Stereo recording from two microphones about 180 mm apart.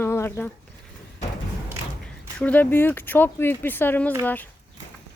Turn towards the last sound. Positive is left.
turn(degrees=10)  # may be behind; listen again after turning